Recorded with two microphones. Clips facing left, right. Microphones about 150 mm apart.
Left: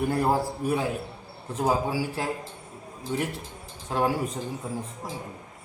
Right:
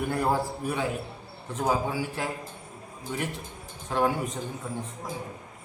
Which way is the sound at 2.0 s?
35° left (ahead or behind).